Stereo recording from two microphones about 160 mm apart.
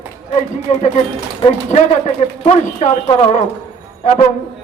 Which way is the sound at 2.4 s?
45° left (ahead or behind).